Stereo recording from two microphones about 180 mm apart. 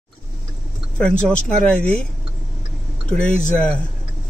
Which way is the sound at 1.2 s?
5° left (ahead or behind).